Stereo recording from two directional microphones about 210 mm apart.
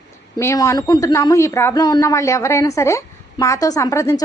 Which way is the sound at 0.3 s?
15° left (ahead or behind).